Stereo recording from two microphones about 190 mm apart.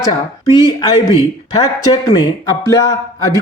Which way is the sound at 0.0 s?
20° left (ahead or behind).